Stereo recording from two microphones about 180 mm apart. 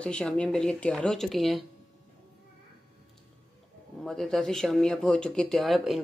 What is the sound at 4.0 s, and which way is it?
Speech, centre (ahead or behind).